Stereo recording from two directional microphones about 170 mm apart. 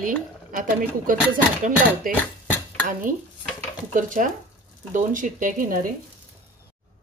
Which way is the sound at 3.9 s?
50° right (ahead or behind).